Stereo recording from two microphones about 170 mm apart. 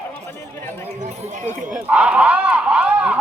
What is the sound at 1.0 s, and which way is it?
Run, 45° right (ahead or behind).